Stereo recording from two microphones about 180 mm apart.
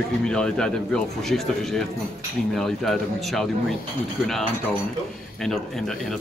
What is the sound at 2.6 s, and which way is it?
Speech, centre (ahead or behind).